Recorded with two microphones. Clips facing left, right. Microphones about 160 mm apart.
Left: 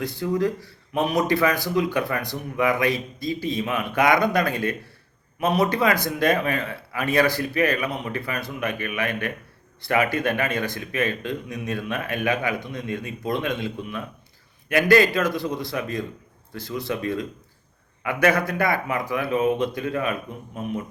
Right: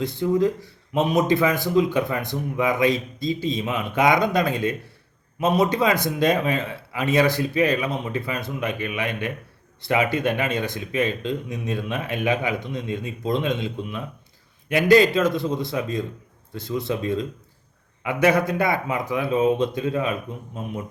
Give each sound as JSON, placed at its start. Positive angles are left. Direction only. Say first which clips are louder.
{"t": 0.0, "sound": "speech", "louder": "right 3 dB", "side_deg": -20}